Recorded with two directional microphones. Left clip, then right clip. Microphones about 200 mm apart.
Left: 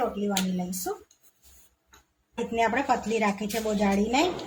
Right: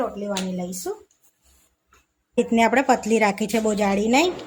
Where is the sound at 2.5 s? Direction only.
55° right (ahead or behind).